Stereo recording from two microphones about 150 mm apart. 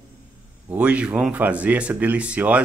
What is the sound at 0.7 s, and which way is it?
Speech, 10° right (ahead or behind).